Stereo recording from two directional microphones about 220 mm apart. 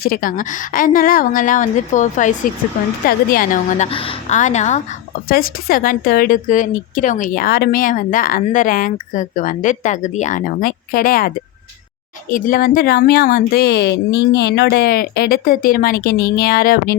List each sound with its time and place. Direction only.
0.0 s a woman's voice: 40° left (ahead or behind)